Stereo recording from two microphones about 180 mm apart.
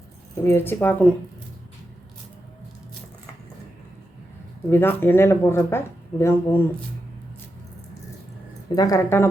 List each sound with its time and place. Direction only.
0.4 s speech: 10° left (ahead or behind)
4.7 s speech: 10° left (ahead or behind)
8.7 s speech: 20° left (ahead or behind)